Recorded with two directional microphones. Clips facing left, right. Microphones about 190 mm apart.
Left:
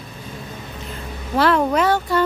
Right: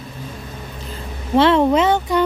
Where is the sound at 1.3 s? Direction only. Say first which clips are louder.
Right 4 dB; 25° right (ahead or behind).